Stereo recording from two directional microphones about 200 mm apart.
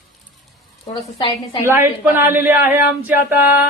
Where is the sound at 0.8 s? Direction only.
25° left (ahead or behind).